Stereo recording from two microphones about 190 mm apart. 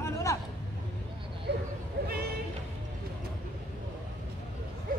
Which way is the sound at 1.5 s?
60° right (ahead or behind).